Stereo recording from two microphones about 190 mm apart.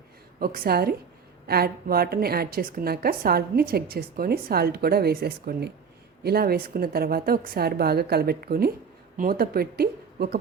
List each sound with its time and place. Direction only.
0.3 s a woman's voice: 50° right (ahead or behind)